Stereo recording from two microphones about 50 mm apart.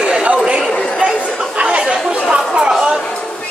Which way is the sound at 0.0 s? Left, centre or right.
Centre.